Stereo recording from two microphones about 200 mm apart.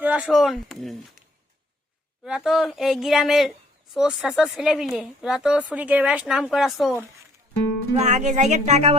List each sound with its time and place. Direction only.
0.0 s speech: 5° right (ahead or behind)
2.2 s speech: 5° right (ahead or behind)
8.1 s speech: 35° right (ahead or behind)